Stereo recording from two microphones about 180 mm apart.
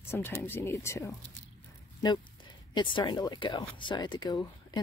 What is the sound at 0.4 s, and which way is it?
Speech, 10° left (ahead or behind).